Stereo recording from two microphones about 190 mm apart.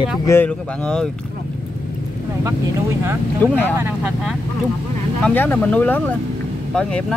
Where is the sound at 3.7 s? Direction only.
10° right (ahead or behind).